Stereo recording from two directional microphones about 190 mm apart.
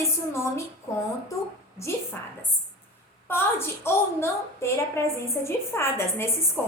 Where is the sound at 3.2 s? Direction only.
10° left (ahead or behind).